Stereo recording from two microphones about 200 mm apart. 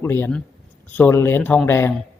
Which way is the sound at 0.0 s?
15° left (ahead or behind).